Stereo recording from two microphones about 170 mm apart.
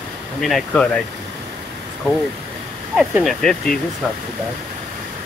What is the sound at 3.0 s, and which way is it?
Speech, 5° right (ahead or behind).